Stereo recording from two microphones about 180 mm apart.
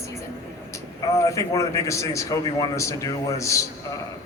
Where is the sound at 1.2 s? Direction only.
15° left (ahead or behind).